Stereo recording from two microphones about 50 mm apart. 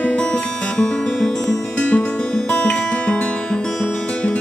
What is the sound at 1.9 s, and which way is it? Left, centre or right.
Guitar, left.